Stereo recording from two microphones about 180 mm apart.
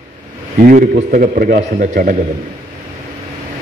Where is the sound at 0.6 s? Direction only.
45° right (ahead or behind).